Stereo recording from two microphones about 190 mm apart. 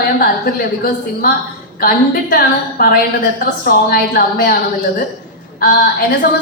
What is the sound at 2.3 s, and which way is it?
A woman's voice, 50° left (ahead or behind).